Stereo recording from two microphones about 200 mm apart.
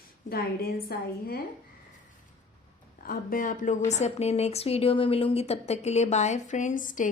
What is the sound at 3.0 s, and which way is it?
A woman's voice, 45° left (ahead or behind).